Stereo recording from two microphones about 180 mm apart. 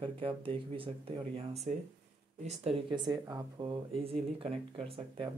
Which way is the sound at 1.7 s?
45° right (ahead or behind).